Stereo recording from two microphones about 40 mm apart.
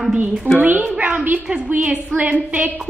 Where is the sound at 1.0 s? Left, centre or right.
Right.